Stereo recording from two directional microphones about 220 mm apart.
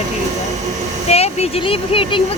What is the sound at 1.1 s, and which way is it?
Speech, 30° left (ahead or behind).